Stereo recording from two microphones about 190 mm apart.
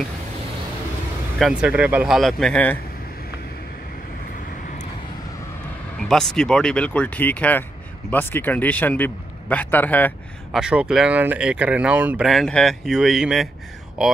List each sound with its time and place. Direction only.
1.4 s speech: 5° right (ahead or behind)
5.9 s a man's voice: 5° left (ahead or behind)
10.6 s speech: 5° right (ahead or behind)